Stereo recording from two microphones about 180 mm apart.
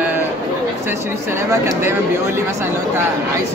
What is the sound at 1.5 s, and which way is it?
Speech, 15° right (ahead or behind).